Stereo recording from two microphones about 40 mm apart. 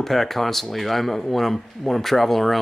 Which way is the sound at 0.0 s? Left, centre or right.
Centre.